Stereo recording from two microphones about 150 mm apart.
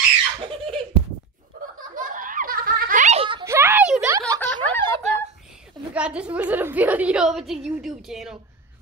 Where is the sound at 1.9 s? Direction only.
65° right (ahead or behind).